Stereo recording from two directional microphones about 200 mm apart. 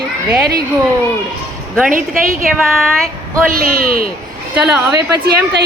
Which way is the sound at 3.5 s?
45° right (ahead or behind).